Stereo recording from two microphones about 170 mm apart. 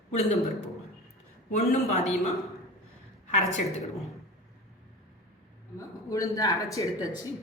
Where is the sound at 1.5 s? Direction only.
40° left (ahead or behind).